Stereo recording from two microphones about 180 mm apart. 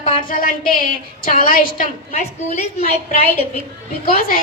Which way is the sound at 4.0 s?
55° left (ahead or behind).